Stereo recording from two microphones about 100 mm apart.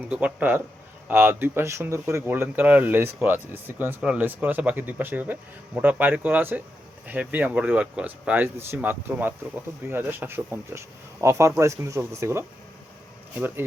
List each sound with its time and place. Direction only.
0.1 s speech: 10° right (ahead or behind); by 12.5 s 25° right (ahead or behind)